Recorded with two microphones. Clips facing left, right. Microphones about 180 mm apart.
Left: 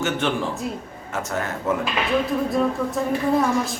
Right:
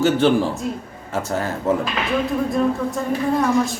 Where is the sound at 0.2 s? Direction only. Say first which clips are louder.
Right 8 dB; 35° right (ahead or behind).